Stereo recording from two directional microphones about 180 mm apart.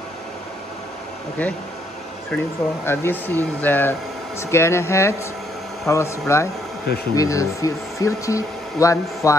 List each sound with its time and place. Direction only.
1.4 s speech: 10° left (ahead or behind)